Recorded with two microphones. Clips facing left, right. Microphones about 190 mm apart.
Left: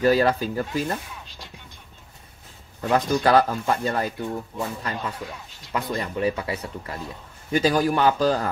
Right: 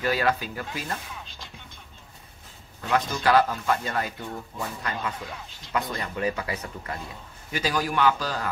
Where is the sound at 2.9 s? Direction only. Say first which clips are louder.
Left 3 dB; 35° left (ahead or behind).